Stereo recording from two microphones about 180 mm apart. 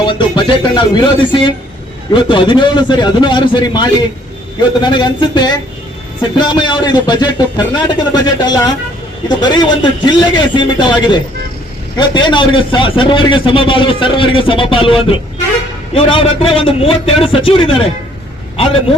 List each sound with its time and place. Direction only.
0.0 s a man's voice: 25° left (ahead or behind)